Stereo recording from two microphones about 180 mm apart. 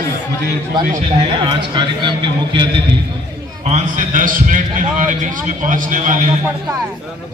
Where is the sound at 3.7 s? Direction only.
45° right (ahead or behind).